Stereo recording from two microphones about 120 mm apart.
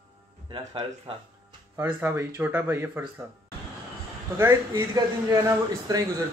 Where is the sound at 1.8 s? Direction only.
20° right (ahead or behind).